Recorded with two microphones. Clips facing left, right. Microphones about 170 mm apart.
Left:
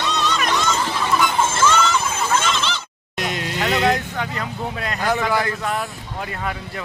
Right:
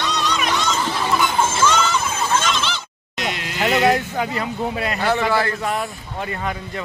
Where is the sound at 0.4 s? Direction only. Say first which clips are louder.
Even; 5° right (ahead or behind).